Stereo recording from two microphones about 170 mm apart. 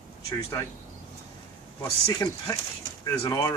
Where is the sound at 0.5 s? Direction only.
20° left (ahead or behind).